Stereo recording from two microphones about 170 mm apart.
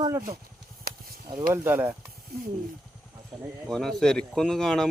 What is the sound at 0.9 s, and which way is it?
Snake, 65° right (ahead or behind).